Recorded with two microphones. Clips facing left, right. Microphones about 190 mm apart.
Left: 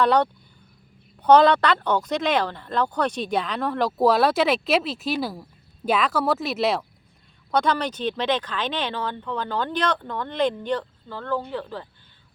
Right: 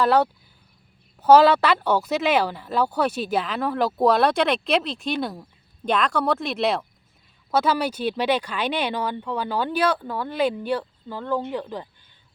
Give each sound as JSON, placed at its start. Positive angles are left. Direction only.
{"t": 0.0, "sound": "speech", "side_deg": -5}